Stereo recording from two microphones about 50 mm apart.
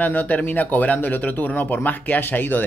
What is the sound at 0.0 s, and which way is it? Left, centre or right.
Speech, left.